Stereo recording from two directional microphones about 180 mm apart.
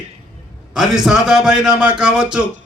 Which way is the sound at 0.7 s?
Centre (ahead or behind).